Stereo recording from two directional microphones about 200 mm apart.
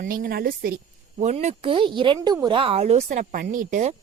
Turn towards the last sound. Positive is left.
turn(degrees=-35)  # may be behind; listen again after turning